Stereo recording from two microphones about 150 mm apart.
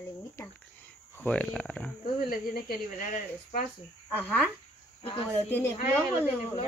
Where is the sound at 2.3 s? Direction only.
75° left (ahead or behind).